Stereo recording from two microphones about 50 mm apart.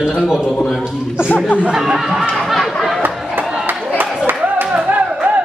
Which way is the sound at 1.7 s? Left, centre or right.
Centre.